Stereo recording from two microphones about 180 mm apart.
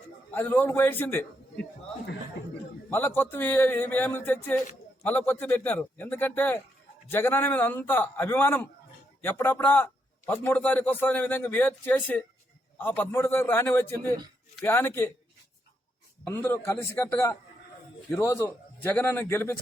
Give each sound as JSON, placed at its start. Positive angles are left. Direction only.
{"t": 0.3, "sound": "a man's voice", "side_deg": 10}
{"t": 3.2, "sound": "a man's voice", "side_deg": 10}
{"t": 16.2, "sound": "a man's voice", "side_deg": 10}